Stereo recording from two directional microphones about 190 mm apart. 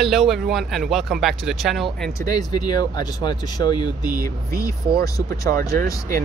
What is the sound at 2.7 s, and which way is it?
Speech, 20° left (ahead or behind).